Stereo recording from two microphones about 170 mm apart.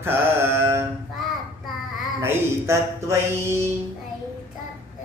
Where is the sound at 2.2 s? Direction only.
15° right (ahead or behind).